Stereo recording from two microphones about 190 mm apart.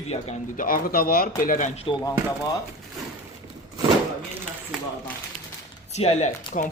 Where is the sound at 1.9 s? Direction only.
25° left (ahead or behind).